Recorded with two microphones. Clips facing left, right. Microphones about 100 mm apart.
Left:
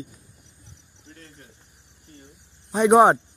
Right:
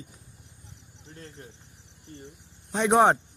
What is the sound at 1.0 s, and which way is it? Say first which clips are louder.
Cricket: right 2 dB; 35° right (ahead or behind).